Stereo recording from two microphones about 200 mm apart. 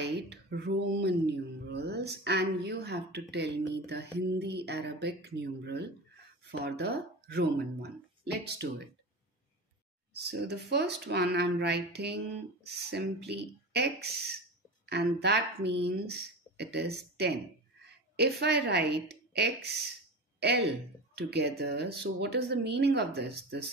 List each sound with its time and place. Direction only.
0.0 s speech: 60° right (ahead or behind)
10.2 s speech: 55° right (ahead or behind)